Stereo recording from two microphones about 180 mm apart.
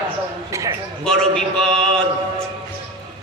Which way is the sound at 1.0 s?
5° left (ahead or behind).